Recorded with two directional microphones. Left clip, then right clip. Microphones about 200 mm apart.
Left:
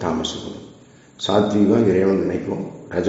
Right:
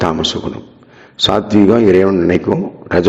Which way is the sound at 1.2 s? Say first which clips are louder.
Right 6 dB; 40° right (ahead or behind).